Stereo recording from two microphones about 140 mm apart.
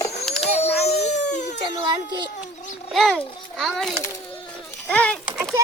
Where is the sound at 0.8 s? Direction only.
50° left (ahead or behind).